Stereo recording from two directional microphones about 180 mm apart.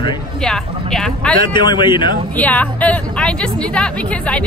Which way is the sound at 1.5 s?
25° left (ahead or behind).